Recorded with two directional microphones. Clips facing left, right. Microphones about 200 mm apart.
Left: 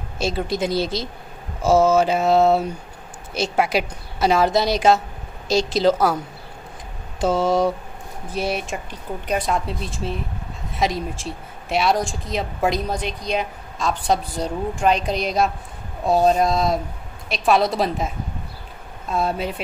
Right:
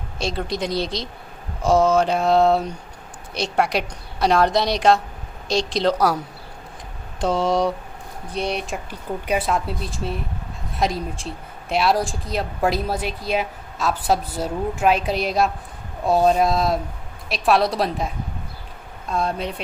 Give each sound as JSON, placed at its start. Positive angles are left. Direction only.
{"t": 0.2, "sound": "a woman's voice", "side_deg": 5}